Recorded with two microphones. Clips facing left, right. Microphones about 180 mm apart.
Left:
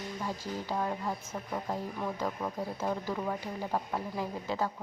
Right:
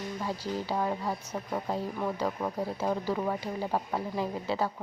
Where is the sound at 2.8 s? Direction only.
15° right (ahead or behind).